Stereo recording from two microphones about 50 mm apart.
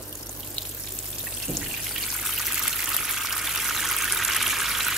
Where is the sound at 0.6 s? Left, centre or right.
Left.